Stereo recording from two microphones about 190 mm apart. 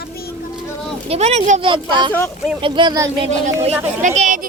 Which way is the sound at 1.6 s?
25° right (ahead or behind).